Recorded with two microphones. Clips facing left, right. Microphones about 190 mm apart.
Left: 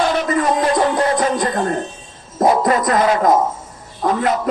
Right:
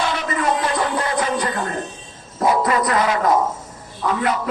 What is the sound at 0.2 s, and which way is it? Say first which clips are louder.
Music: left 4 dB; 45° left (ahead or behind).